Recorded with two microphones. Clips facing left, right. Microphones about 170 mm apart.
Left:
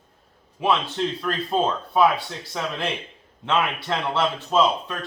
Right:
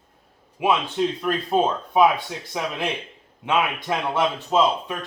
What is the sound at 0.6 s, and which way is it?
Speech, 15° right (ahead or behind).